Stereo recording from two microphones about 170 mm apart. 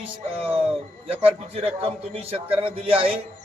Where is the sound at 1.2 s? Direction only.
35° right (ahead or behind).